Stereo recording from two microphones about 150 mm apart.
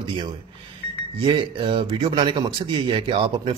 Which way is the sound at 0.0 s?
30° right (ahead or behind).